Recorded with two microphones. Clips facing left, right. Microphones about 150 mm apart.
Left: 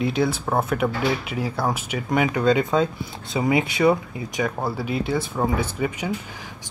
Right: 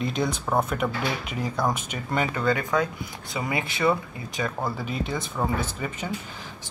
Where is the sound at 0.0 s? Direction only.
5° left (ahead or behind).